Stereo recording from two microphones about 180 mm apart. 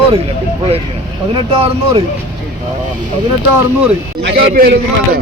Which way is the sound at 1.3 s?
30° right (ahead or behind).